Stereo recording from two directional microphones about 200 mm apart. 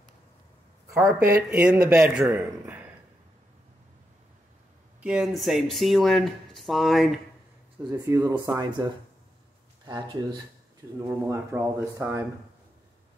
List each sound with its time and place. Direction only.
0.9 s speech: 15° right (ahead or behind)
2.6 s a sound: 10° right (ahead or behind)
5.0 s speech: 5° right (ahead or behind)
7.8 s speech: 10° right (ahead or behind)
11.0 s speech: 15° right (ahead or behind)